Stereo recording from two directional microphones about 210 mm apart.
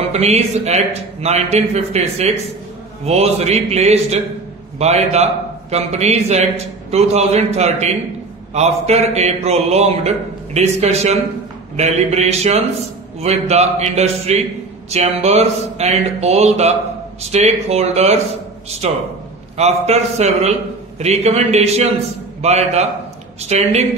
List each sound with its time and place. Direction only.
0.1 s a man's voice: 30° right (ahead or behind)